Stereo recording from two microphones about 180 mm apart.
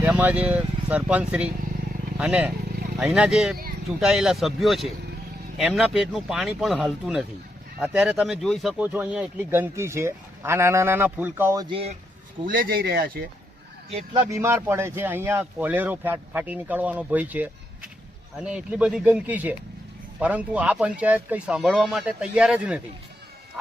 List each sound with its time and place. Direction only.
0.0 s speech: 10° right (ahead or behind)
11.7 s speech: 35° right (ahead or behind)
12.5 s speech: 55° right (ahead or behind)
13.9 s speech: 25° right (ahead or behind); by 22.8 s 5° right (ahead or behind)